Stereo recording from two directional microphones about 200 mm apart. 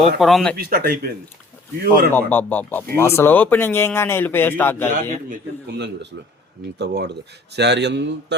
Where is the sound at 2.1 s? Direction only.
10° left (ahead or behind).